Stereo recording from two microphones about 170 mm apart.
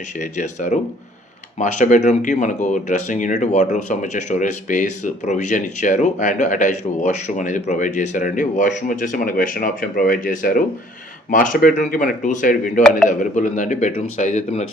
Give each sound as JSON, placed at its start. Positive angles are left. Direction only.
{"t": 0.2, "sound": "speech", "side_deg": 45}